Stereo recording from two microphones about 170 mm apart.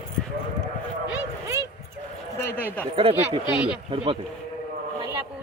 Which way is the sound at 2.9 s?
30° right (ahead or behind).